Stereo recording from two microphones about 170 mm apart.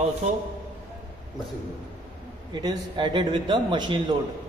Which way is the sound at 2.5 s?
25° right (ahead or behind).